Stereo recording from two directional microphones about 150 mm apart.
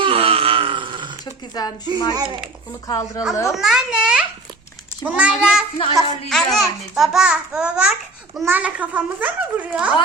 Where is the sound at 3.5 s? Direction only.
5° right (ahead or behind).